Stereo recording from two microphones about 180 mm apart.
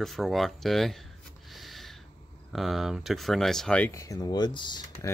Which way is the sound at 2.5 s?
Centre (ahead or behind).